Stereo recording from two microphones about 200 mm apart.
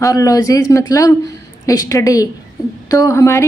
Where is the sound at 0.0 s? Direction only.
15° left (ahead or behind).